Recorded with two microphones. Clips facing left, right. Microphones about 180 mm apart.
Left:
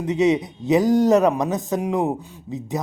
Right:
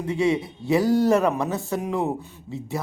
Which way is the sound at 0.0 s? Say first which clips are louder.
Left 4 dB; 20° left (ahead or behind).